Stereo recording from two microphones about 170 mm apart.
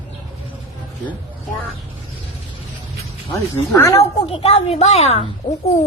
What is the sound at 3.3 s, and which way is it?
Speech, 15° left (ahead or behind).